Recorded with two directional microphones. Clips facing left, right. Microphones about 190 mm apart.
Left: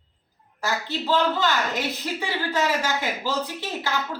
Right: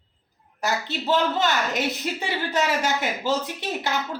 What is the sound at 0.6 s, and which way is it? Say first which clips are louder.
A woman's voice: right 1 dB; 20° right (ahead or behind).